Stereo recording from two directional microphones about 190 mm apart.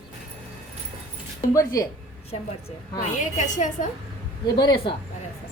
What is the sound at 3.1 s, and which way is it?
Speech, 40° left (ahead or behind).